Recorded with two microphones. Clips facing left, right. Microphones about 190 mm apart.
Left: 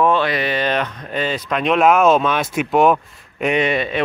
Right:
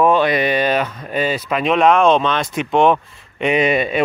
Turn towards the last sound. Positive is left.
turn(degrees=-10)  # may be behind; listen again after turning